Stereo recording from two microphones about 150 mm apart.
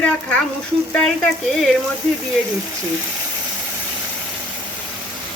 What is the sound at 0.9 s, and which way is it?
Speech, 5° left (ahead or behind).